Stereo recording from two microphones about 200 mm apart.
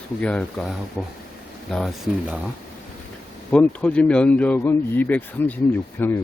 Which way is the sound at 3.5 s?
5° left (ahead or behind).